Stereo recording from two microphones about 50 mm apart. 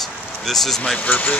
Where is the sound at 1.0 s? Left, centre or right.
Left.